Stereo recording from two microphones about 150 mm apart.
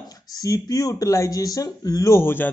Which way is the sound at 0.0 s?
25° left (ahead or behind).